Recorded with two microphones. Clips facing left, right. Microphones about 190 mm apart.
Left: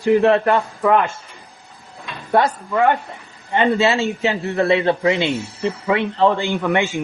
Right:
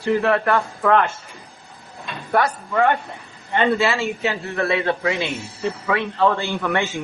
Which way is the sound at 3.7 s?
25° left (ahead or behind).